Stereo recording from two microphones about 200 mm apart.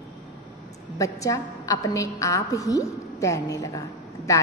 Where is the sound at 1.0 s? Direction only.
15° left (ahead or behind).